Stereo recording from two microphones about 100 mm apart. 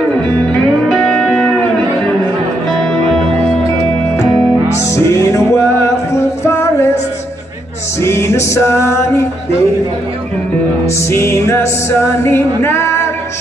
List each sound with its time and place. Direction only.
0.8 s music: 5° left (ahead or behind)
2.7 s music: 5° left (ahead or behind)
4.7 s music: 30° left (ahead or behind)
8.0 s music: 25° left (ahead or behind)
11.1 s music: 25° left (ahead or behind)